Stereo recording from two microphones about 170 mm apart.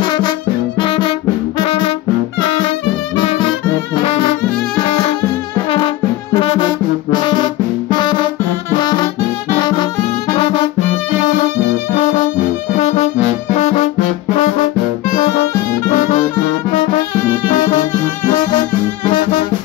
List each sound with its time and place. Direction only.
0.0 s music: 25° left (ahead or behind)
3.2 s music: 25° left (ahead or behind)
4.0 s brass instrument: 35° left (ahead or behind)
6.3 s music: 25° left (ahead or behind)
8.7 s brass instrument: 25° left (ahead or behind)
9.6 s music: 25° left (ahead or behind)
12.7 s music: 40° left (ahead or behind)
17.5 s music: 50° left (ahead or behind)